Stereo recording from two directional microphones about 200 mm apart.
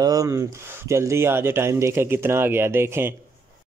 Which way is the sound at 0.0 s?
15° right (ahead or behind).